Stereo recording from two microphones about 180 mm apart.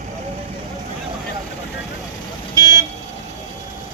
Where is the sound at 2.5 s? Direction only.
20° right (ahead or behind).